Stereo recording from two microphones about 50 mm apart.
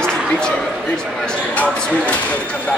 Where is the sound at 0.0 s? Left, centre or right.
Centre.